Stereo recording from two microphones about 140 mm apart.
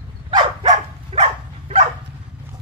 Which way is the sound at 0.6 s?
55° right (ahead or behind).